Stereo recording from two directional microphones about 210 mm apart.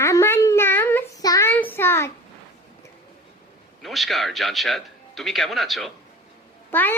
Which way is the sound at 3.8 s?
Centre (ahead or behind).